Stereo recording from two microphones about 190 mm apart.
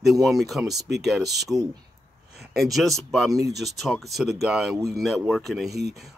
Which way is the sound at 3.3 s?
20° right (ahead or behind).